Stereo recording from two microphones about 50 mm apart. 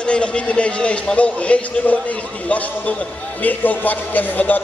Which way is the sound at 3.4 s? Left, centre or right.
Left.